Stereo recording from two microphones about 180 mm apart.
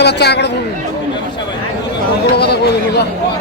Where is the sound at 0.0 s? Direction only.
65° left (ahead or behind).